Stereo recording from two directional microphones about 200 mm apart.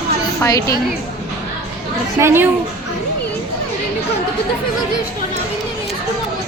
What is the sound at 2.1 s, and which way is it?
Speech, 10° right (ahead or behind).